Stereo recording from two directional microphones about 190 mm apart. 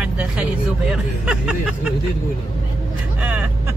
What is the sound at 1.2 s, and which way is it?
Speech, centre (ahead or behind).